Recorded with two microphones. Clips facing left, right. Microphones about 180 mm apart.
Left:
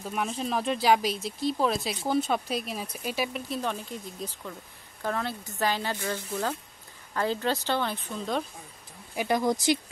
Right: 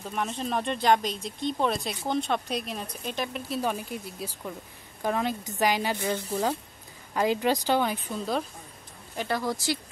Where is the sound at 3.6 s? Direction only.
10° right (ahead or behind).